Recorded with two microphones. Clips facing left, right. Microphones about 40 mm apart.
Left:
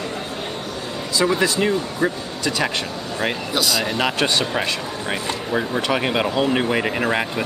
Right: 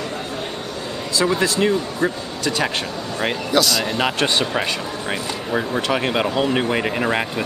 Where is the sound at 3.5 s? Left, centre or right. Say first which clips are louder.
Right 5 dB; centre.